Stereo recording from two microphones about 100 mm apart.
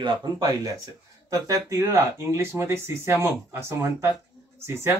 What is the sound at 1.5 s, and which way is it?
Speech, 30° right (ahead or behind).